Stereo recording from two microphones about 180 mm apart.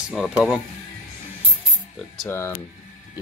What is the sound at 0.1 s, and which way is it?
Speech, centre (ahead or behind).